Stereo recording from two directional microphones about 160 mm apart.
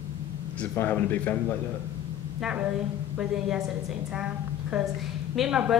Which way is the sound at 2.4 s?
5° right (ahead or behind).